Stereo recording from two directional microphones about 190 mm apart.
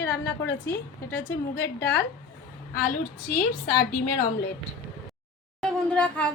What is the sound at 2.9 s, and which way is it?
Speech, 45° left (ahead or behind).